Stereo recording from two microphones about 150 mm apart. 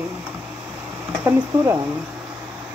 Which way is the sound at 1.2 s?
20° right (ahead or behind).